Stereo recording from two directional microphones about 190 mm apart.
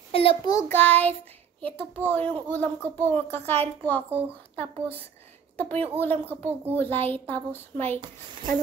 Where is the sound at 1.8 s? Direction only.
10° right (ahead or behind).